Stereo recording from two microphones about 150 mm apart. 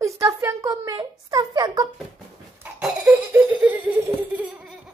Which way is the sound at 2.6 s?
10° right (ahead or behind).